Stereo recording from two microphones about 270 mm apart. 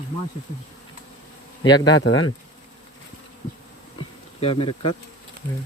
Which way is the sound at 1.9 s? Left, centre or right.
Left.